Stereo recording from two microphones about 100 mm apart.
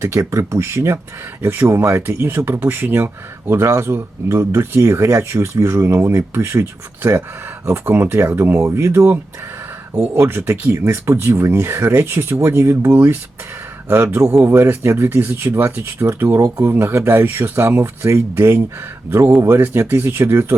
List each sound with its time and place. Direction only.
0.0 s speech: 30° right (ahead or behind)